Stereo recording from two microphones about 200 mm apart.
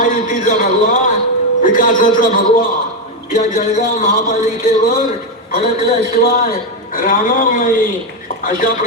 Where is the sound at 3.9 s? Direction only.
45° left (ahead or behind).